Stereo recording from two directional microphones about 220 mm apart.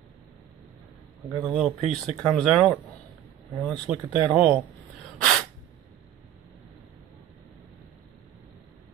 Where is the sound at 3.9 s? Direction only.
5° right (ahead or behind).